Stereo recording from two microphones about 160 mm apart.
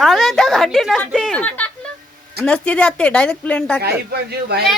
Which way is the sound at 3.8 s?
90° right.